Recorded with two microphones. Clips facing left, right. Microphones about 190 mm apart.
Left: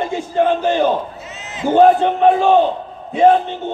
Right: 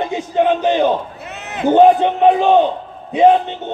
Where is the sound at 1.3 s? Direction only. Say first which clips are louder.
Right 4 dB; 60° right (ahead or behind).